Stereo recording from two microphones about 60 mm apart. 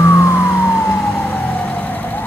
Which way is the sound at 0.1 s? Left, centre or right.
Left.